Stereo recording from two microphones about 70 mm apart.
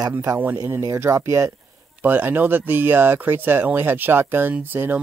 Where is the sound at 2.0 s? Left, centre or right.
Right.